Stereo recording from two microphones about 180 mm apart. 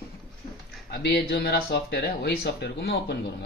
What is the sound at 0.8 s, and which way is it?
Speech, 65° left (ahead or behind).